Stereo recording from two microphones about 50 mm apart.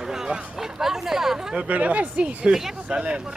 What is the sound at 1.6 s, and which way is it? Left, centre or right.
Speech, right.